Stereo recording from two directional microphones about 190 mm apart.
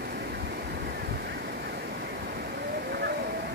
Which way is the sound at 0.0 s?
55° right (ahead or behind).